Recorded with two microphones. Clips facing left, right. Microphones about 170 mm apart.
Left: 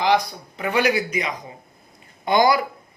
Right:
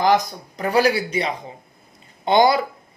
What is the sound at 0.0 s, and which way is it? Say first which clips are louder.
Speech: right 2 dB; 45° right (ahead or behind).